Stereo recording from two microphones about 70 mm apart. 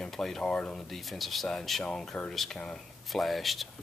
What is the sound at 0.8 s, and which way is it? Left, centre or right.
Speech, centre.